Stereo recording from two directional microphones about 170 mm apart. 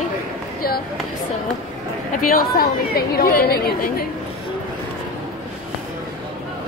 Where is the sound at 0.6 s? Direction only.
65° left (ahead or behind).